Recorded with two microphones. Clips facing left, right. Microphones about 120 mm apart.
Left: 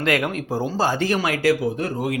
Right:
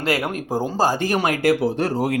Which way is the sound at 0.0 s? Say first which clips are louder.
Left 1 dB; 35° right (ahead or behind).